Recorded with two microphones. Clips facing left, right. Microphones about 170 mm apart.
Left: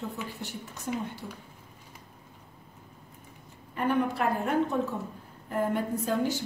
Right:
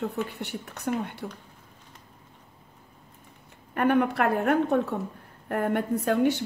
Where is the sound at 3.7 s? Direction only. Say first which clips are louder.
Right 5 dB; 65° right (ahead or behind).